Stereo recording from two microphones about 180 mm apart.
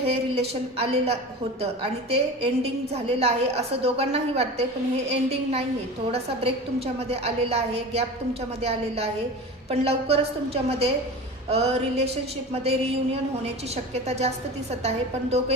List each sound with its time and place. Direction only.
0.0 s a woman's voice: 35° right (ahead or behind)